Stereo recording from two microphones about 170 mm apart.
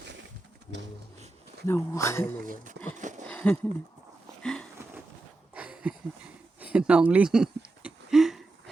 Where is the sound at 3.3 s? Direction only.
10° left (ahead or behind).